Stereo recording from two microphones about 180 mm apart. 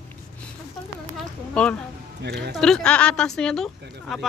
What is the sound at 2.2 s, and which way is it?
Speech, 65° right (ahead or behind).